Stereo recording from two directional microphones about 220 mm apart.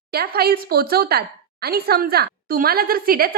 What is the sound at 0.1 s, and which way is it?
A woman's voice, 45° right (ahead or behind).